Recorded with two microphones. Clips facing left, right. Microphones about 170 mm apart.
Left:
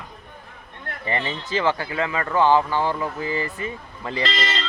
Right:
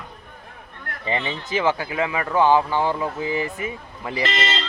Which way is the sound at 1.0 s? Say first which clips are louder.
Right 1 dB; 15° right (ahead or behind).